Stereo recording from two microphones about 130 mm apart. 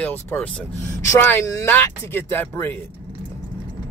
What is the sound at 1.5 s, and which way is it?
Speech, 20° left (ahead or behind).